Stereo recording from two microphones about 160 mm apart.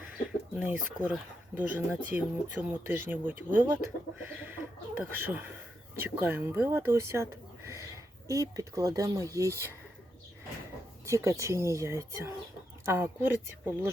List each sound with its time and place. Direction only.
0.5 s speech: 10° right (ahead or behind)
4.3 s chicken: 10° right (ahead or behind)
4.9 s speech: 10° right (ahead or behind)
11.0 s speech: 20° right (ahead or behind)